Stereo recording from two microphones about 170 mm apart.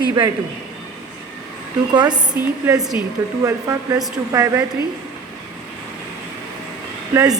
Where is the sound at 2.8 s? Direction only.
Centre (ahead or behind).